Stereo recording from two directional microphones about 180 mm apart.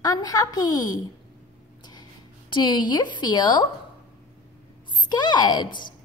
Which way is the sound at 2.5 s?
25° left (ahead or behind).